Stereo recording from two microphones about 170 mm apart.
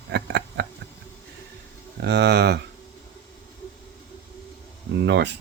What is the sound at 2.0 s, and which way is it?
Speech, 80° right.